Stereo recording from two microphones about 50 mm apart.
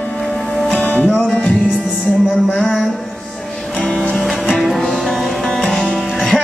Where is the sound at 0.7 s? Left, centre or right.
Left.